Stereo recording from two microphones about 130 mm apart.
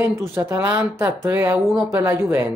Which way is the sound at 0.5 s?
15° right (ahead or behind).